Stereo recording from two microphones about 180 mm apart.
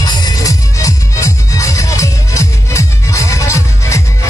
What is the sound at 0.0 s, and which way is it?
Music, 20° left (ahead or behind).